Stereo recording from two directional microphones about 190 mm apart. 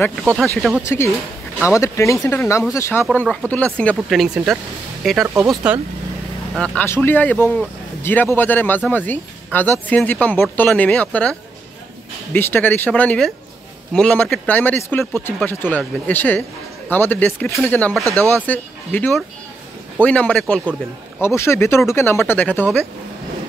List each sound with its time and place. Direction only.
0.4 s speech: centre (ahead or behind)
0.8 s speech: 15° left (ahead or behind); by 5.8 s 5° right (ahead or behind)
6.5 s speech: 5° left (ahead or behind)
18.0 s speech: 15° right (ahead or behind)
18.4 s speech: 10° left (ahead or behind)
21.2 s speech: 15° left (ahead or behind)